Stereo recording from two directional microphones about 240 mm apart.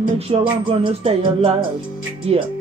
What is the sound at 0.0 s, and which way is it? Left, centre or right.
Music, right.